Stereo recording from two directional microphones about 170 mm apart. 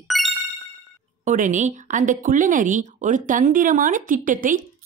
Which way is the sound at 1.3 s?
45° right (ahead or behind).